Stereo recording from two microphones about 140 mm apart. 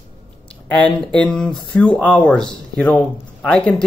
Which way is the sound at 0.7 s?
10° left (ahead or behind).